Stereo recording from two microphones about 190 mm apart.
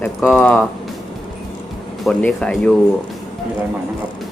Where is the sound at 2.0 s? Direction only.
5° left (ahead or behind).